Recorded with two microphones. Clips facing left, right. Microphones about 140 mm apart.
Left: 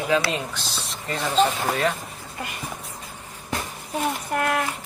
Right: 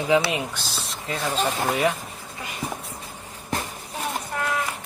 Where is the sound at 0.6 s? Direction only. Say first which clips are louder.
Even; centre (ahead or behind).